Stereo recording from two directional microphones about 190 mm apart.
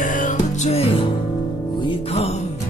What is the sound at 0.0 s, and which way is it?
Music, 45° left (ahead or behind).